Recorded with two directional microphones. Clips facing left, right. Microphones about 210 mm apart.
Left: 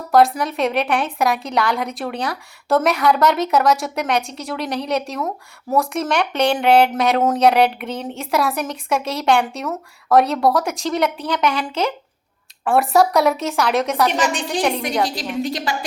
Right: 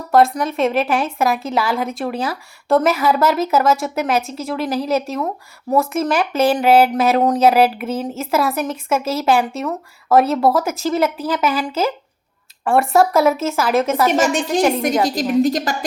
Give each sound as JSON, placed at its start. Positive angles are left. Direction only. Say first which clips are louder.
{"t": 0.3, "sound": "a woman's voice", "louder": "right 2 dB", "side_deg": 0}
{"t": 14.1, "sound": "a woman's voice", "louder": "right 4 dB", "side_deg": -45}